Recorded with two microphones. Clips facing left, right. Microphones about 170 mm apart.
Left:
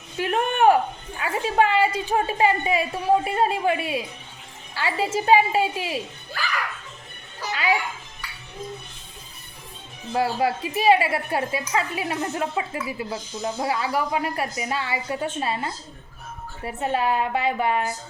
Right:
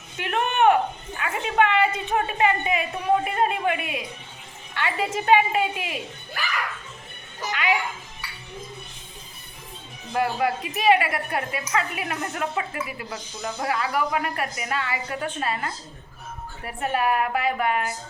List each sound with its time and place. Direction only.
0.2 s a sound: 35° left (ahead or behind)
1.2 s a woman's voice: 30° left (ahead or behind)
7.5 s music: 35° left (ahead or behind)
10.1 s a woman's voice: 30° left (ahead or behind)